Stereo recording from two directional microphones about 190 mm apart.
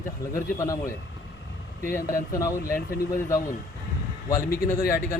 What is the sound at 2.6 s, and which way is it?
Speech, 50° left (ahead or behind).